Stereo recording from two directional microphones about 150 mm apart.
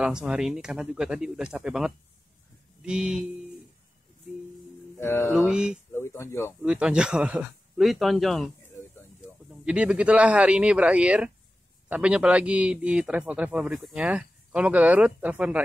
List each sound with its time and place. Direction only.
0.0 s speech: 5° right (ahead or behind)
4.9 s speech: 15° left (ahead or behind)
5.3 s speech: 5° right (ahead or behind)
5.9 s a sound: 15° left (ahead or behind)
6.6 s a man's voice: 5° right (ahead or behind)